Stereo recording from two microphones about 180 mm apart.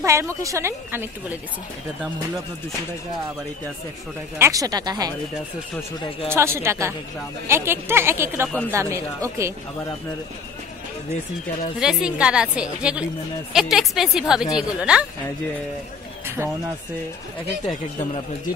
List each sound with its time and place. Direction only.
0.0 s a woman's voice: 15° right (ahead or behind)
4.4 s speech: 20° right (ahead or behind)
6.2 s a woman's voice: 15° right (ahead or behind)
11.8 s a woman's voice: 5° right (ahead or behind)